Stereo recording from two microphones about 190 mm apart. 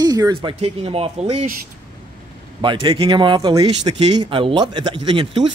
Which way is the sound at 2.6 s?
25° right (ahead or behind).